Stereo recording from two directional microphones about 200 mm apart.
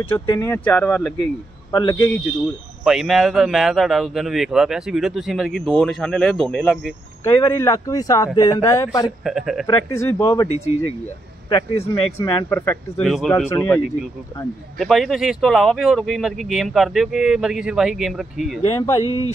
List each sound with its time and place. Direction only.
0.3 s a man's voice: 15° left (ahead or behind)
2.8 s speech: centre (ahead or behind)
7.3 s speech: 15° left (ahead or behind)
9.2 s speech: centre (ahead or behind)
9.7 s speech: 15° left (ahead or behind)
11.7 s a man's voice: 30° left (ahead or behind)
12.2 s speech: 15° left (ahead or behind)
13.0 s speech: centre (ahead or behind)
13.5 s speech: 10° left (ahead or behind)
14.8 s speech: centre (ahead or behind)
18.6 s a man's voice: 20° left (ahead or behind)